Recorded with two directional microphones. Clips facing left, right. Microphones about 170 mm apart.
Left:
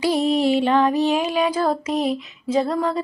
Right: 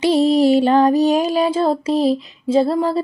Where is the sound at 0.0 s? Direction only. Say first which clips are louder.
Right 5 dB; 30° right (ahead or behind).